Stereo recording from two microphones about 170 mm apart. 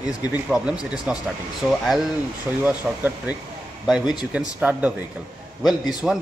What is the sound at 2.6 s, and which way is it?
Speech, 10° right (ahead or behind).